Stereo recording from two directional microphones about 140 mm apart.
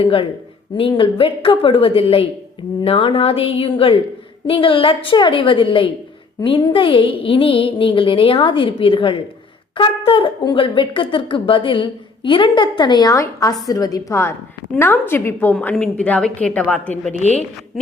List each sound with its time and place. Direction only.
0.0 s a woman's voice: 40° left (ahead or behind); by 17.0 s 10° left (ahead or behind)
17.2 s a woman's voice: 55° left (ahead or behind)